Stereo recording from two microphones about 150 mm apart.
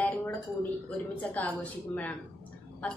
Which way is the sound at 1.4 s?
10° left (ahead or behind).